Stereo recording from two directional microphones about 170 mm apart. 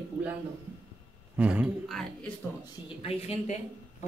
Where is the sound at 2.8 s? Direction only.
35° left (ahead or behind).